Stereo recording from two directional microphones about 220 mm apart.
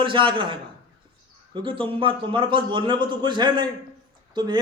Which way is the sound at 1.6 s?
25° right (ahead or behind).